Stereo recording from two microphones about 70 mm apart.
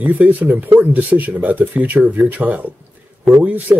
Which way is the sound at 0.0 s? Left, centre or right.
Centre.